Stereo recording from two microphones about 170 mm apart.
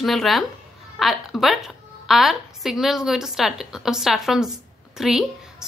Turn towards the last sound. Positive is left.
turn(degrees=0)  # may be behind; listen again after turning